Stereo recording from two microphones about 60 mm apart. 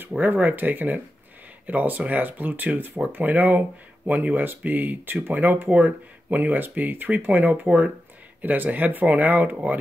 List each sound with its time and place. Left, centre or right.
0.2 s speech: right